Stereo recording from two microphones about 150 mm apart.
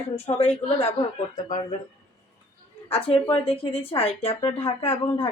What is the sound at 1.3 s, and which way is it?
Speech, 55° left (ahead or behind).